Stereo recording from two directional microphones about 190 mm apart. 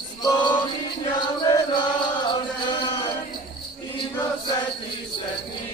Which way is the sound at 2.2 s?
25° left (ahead or behind).